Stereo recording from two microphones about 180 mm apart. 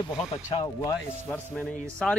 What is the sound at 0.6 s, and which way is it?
Speech, 20° left (ahead or behind).